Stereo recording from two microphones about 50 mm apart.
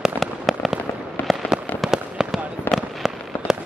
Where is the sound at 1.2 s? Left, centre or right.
Left.